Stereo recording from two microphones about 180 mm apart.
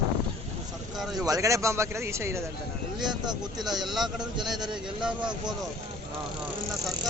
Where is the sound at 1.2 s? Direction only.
20° right (ahead or behind).